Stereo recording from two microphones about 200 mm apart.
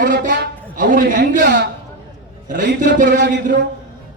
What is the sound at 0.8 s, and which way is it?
Speech, 40° right (ahead or behind).